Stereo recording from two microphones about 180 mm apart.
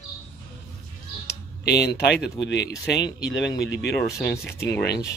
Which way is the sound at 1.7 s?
65° left (ahead or behind).